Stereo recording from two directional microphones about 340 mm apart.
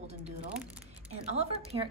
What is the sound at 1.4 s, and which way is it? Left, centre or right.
Speech, centre.